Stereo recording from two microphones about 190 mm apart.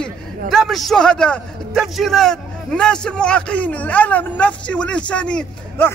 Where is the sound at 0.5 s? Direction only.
Centre (ahead or behind).